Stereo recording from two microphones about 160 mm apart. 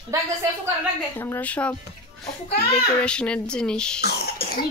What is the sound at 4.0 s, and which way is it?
Speech, 85° left.